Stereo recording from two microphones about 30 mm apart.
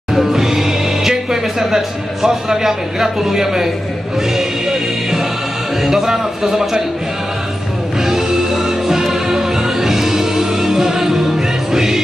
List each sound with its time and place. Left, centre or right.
0.1 s music: centre
2.2 s a man's voice: centre
4.4 s music: centre
5.9 s a man's voice: centre
8.0 s music: centre